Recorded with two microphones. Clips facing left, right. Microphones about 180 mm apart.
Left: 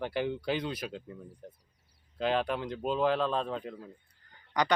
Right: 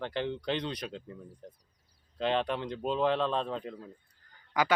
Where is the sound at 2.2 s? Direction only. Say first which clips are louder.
Even; centre (ahead or behind).